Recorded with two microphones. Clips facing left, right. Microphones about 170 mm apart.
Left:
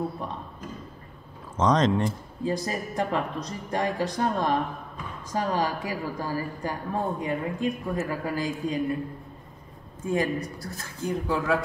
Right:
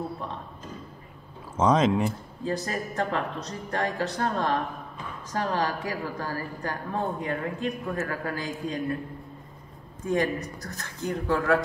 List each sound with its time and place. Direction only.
1.6 s speech: 10° right (ahead or behind)
2.4 s a woman's voice: 10° left (ahead or behind)
10.6 s a woman's voice: 10° left (ahead or behind)